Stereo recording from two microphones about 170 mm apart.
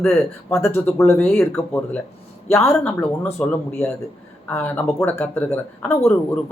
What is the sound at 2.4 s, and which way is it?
Speech, 15° left (ahead or behind).